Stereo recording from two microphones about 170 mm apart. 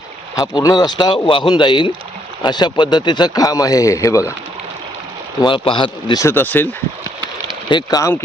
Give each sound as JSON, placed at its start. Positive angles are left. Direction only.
{"t": 0.3, "sound": "a man's voice", "side_deg": 20}
{"t": 5.4, "sound": "a man's voice", "side_deg": 30}
{"t": 6.2, "sound": "speech", "side_deg": 10}
{"t": 7.7, "sound": "a man's voice", "side_deg": 25}